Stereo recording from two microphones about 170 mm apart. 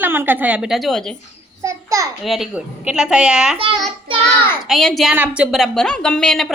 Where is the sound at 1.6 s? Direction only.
20° right (ahead or behind).